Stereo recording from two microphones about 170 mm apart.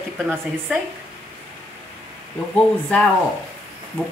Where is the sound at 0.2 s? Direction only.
5° right (ahead or behind).